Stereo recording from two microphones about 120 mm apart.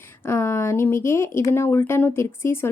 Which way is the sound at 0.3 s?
20° left (ahead or behind).